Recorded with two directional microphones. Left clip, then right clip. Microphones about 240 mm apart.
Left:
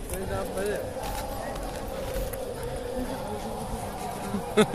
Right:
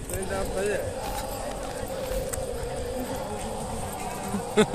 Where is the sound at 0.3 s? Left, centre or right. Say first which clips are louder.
Right 2 dB; right.